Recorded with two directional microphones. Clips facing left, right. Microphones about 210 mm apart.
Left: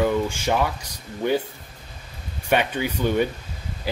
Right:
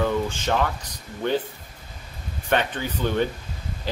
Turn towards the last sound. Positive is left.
turn(degrees=10)  # may be behind; listen again after turning